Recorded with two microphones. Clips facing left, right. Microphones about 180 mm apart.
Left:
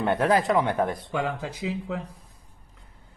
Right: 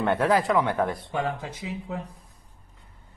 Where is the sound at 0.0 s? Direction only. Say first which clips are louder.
Even; 20° left (ahead or behind).